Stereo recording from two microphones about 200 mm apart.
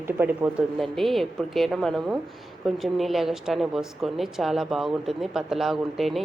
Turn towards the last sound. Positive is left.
turn(degrees=0)  # may be behind; listen again after turning